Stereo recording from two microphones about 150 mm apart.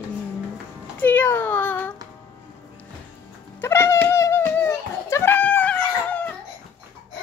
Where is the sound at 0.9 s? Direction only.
10° left (ahead or behind).